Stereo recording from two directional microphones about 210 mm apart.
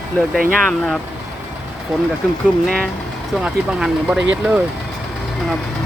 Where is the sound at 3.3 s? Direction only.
5° right (ahead or behind).